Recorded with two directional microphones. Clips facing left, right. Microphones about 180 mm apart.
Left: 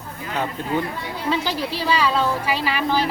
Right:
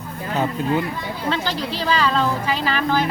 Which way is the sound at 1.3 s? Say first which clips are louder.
Left 1 dB; 10° left (ahead or behind).